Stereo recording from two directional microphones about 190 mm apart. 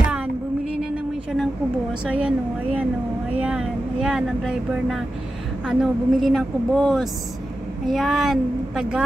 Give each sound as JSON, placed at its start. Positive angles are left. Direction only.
{"t": 2.0, "sound": "speech", "side_deg": -5}